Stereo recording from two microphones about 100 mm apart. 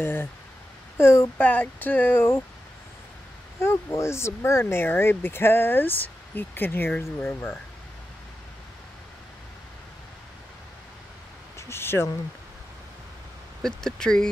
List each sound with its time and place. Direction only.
0.0 s speech: 20° left (ahead or behind)
3.5 s speech: 25° left (ahead or behind)
11.5 s a sound: 25° left (ahead or behind)
13.6 s speech: 5° left (ahead or behind)